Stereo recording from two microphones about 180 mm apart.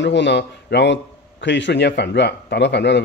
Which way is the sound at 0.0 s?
80° left.